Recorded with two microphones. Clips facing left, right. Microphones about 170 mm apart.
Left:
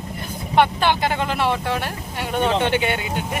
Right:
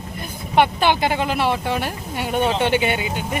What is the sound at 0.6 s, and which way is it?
Speech, 10° right (ahead or behind).